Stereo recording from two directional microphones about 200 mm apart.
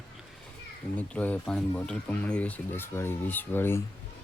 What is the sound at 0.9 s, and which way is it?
Speech, 5° left (ahead or behind).